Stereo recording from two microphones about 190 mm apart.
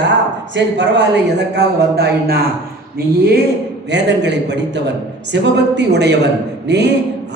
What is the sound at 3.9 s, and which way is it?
A man's voice, 65° right (ahead or behind).